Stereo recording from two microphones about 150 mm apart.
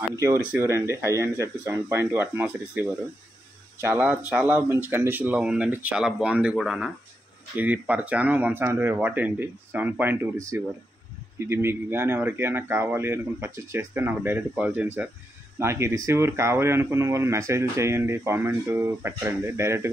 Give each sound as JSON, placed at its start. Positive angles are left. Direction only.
{"t": 0.1, "sound": "speech", "side_deg": -20}